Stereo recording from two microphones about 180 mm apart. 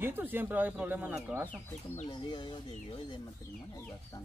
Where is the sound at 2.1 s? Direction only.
25° left (ahead or behind).